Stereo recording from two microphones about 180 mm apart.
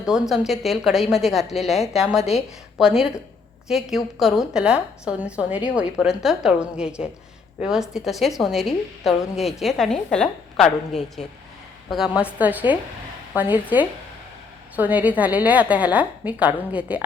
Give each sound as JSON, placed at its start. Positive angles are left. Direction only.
{"t": 0.0, "sound": "a woman's voice", "side_deg": 0}